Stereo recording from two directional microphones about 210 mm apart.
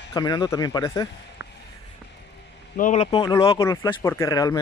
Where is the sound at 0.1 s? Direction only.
20° left (ahead or behind).